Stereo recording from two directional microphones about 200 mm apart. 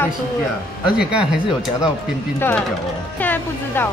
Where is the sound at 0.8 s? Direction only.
5° right (ahead or behind).